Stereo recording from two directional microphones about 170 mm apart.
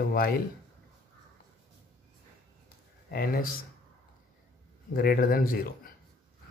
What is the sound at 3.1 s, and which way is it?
Speech, 65° left (ahead or behind).